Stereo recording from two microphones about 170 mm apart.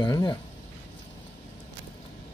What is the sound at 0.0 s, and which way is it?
Speech, 25° left (ahead or behind).